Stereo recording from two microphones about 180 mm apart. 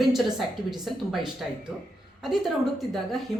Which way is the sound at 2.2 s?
Centre (ahead or behind).